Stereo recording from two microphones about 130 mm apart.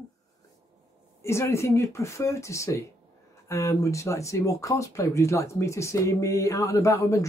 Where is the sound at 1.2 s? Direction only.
20° left (ahead or behind).